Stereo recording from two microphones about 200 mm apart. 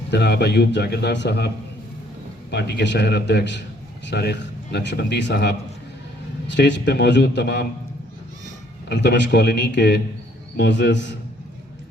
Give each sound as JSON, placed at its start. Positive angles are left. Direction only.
{"t": 0.1, "sound": "speech", "side_deg": 55}
{"t": 2.5, "sound": "speech", "side_deg": 55}
{"t": 8.9, "sound": "speech", "side_deg": 60}